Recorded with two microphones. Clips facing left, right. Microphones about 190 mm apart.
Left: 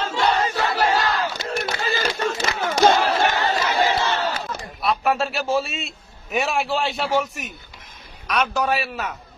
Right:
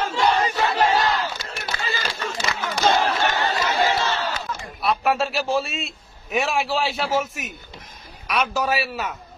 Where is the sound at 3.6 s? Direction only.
20° left (ahead or behind).